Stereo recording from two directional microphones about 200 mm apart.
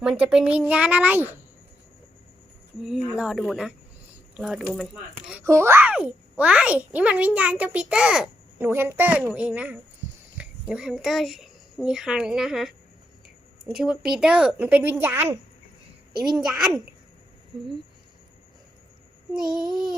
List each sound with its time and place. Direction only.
0.2 s a child's voice: 5° right (ahead or behind)
2.8 s speech: 5° right (ahead or behind)
5.3 s a child's voice: 15° right (ahead or behind)
16.1 s a woman's voice: 20° right (ahead or behind)
16.4 s speech: centre (ahead or behind)
19.3 s speech: 5° right (ahead or behind)